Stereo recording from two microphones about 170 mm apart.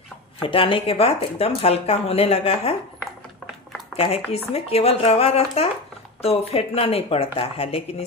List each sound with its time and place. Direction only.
0.4 s speech: 30° left (ahead or behind)
3.9 s speech: 35° left (ahead or behind)